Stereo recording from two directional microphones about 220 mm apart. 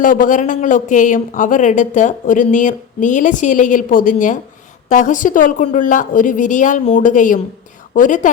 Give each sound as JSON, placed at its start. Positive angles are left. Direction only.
{"t": 0.0, "sound": "a woman's voice", "side_deg": 35}